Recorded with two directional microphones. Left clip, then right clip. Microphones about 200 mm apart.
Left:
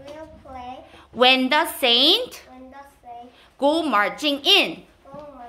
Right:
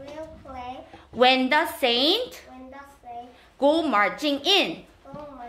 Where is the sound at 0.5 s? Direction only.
Centre (ahead or behind).